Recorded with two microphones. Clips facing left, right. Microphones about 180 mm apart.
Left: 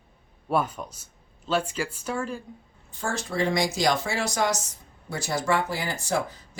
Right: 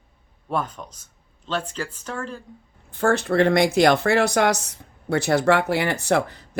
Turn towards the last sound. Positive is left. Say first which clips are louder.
# right 6 dB
turn(degrees=-65)  # may be behind; listen again after turning